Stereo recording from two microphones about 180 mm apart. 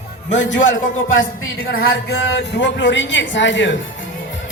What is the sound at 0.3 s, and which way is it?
Speech, 85° left.